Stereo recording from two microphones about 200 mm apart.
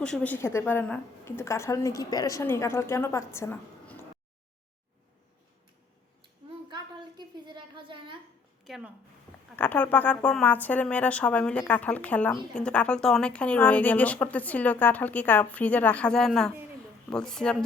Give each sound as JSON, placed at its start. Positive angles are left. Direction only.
{"t": 0.0, "sound": "speech", "side_deg": 5}
{"t": 6.7, "sound": "a sound", "side_deg": -20}
{"t": 8.6, "sound": "a woman's voice", "side_deg": 0}